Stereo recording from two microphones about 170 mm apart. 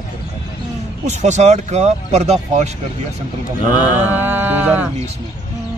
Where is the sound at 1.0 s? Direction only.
45° right (ahead or behind).